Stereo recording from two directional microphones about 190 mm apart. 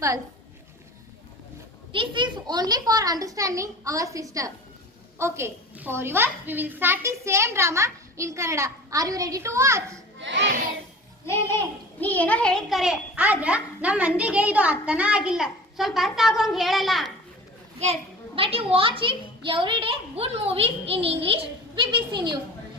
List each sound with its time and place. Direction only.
1.9 s a child's voice: 25° right (ahead or behind)
10.2 s a child's voice: 70° right (ahead or behind)
11.3 s a child's voice: 10° left (ahead or behind)
18.3 s a child's voice: 30° right (ahead or behind)